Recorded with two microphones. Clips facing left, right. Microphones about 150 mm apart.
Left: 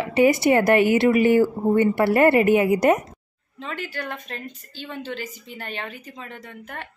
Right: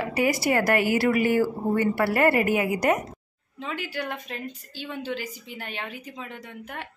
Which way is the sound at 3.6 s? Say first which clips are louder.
Even; 10° right (ahead or behind).